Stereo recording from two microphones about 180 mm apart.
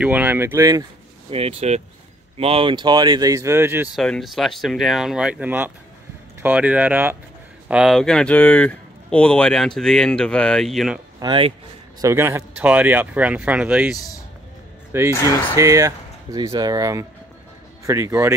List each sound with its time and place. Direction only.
0.0 s speech: 10° right (ahead or behind)
1.3 s speech: 35° right (ahead or behind); by 3.9 s 10° right (ahead or behind)
3.9 s speech: centre (ahead or behind)
11.1 s speech: 30° right (ahead or behind)
12.0 s speech: 15° right (ahead or behind)